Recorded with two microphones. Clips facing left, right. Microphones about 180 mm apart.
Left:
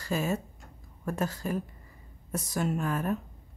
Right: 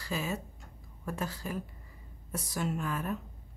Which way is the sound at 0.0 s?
45° left (ahead or behind).